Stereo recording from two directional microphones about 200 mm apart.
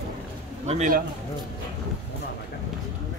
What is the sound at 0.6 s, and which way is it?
Speech, 40° right (ahead or behind).